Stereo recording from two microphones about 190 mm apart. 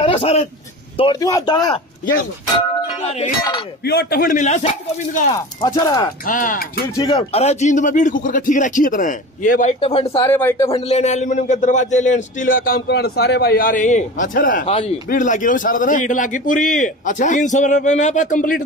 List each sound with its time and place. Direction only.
0.0 s a man's voice: 30° left (ahead or behind)
3.8 s a man's voice: 55° left (ahead or behind); by 4.6 s 40° left (ahead or behind)
5.3 s a man's voice: 20° left (ahead or behind)
6.2 s a man's voice: 45° left (ahead or behind)
7.0 s a man's voice: 20° left (ahead or behind)
7.3 s speech: 35° left (ahead or behind)
10.2 s speech: 15° left (ahead or behind)
10.7 s speech: 35° left (ahead or behind)
14.7 s speech: 30° left (ahead or behind)
15.0 s a man's voice: 45° left (ahead or behind)